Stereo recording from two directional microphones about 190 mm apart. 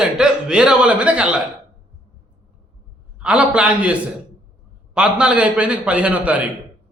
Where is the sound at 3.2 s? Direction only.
5° right (ahead or behind).